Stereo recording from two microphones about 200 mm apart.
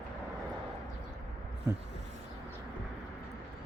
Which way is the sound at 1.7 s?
15° right (ahead or behind).